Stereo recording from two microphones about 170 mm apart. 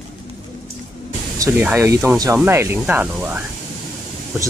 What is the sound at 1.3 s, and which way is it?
Speech, 15° right (ahead or behind).